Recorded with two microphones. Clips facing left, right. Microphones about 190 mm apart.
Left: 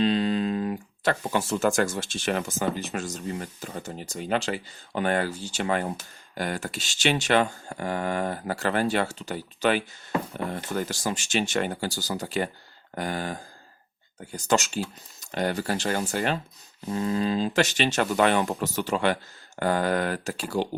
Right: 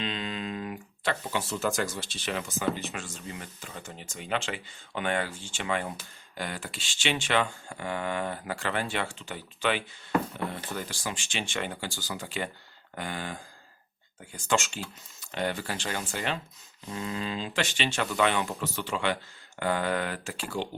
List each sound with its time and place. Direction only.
0.0 s speech: 35° left (ahead or behind)